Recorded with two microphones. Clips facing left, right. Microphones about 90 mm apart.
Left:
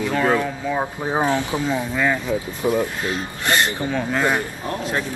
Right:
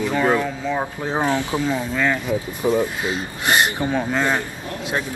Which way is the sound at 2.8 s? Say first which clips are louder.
Right 1 dB; 15° right (ahead or behind).